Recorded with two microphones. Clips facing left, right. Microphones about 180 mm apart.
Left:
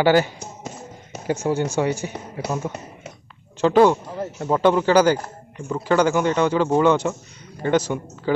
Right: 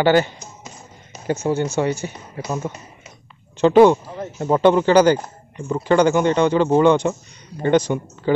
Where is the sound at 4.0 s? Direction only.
5° left (ahead or behind).